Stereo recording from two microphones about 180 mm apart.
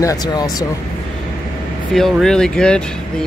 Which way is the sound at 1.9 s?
Centre (ahead or behind).